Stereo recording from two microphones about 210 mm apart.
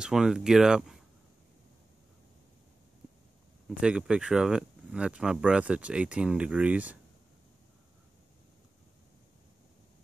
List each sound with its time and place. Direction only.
0.0 s speech: 5° right (ahead or behind)
3.6 s speech: 5° right (ahead or behind)